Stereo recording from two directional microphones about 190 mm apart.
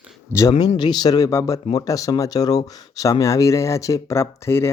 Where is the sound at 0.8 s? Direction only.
20° left (ahead or behind).